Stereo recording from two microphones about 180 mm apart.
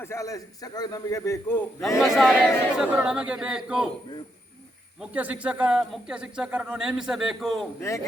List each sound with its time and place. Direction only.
0.0 s a man's voice: 15° left (ahead or behind)
2.0 s a man's voice: centre (ahead or behind)
4.9 s a man's voice: 10° right (ahead or behind)
7.8 s a man's voice: 15° left (ahead or behind)